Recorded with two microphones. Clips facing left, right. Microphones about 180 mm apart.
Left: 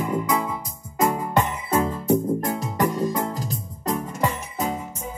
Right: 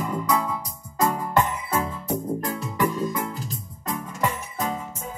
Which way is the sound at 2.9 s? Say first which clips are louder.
Left 3 dB; 55° left (ahead or behind).